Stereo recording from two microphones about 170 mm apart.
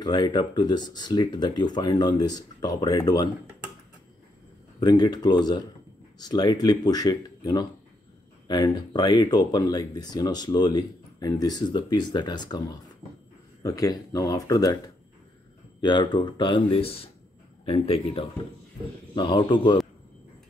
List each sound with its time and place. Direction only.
0.0 s speech: 25° left (ahead or behind)
4.7 s speech: 25° left (ahead or behind)
15.8 s speech: 25° left (ahead or behind)